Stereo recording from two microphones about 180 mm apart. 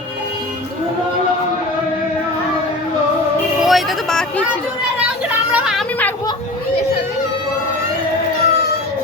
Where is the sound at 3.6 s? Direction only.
Centre (ahead or behind).